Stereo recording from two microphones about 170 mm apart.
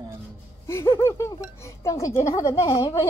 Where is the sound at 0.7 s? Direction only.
15° left (ahead or behind).